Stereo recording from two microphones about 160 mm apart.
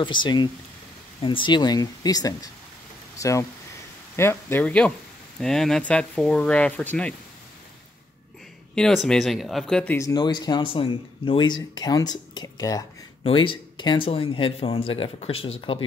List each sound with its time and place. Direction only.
0.0 s speech: 30° left (ahead or behind); by 7.2 s 10° left (ahead or behind)
8.7 s speech: 5° left (ahead or behind)
9.9 s speech: 25° left (ahead or behind)
13.2 s speech: 35° left (ahead or behind)